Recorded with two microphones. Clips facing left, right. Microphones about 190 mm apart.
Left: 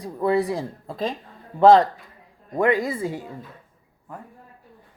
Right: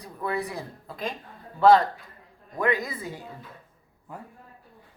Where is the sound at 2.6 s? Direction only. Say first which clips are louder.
Left 6 dB; 30° left (ahead or behind).